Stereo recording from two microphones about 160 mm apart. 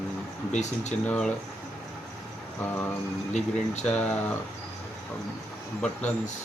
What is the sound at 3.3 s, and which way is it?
Speech, 45° left (ahead or behind).